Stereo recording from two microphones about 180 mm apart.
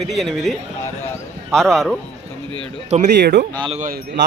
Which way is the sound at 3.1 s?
70° right (ahead or behind).